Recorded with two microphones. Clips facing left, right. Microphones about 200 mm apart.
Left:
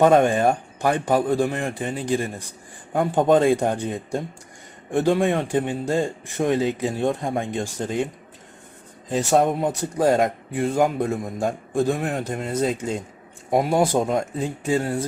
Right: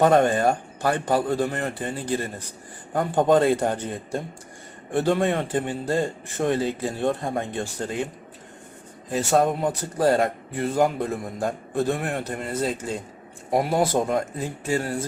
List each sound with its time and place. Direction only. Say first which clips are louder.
0.0 s a man's voice: left 2 dB; 15° left (ahead or behind)
2.9 s a man's voice: left 2 dB; 5° left (ahead or behind)
3.3 s a man's voice: left 2 dB; 15° left (ahead or behind)
9.1 s a man's voice: left 2 dB; 15° left (ahead or behind)
12.4 s a man's voice: left 4 dB; 5° right (ahead or behind)
13.5 s a man's voice: left 2 dB; 15° left (ahead or behind)